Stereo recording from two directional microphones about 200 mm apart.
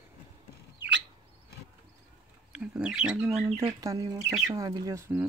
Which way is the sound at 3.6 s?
20° right (ahead or behind).